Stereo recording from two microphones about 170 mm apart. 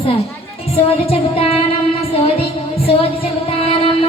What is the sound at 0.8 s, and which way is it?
Child singing, 35° left (ahead or behind).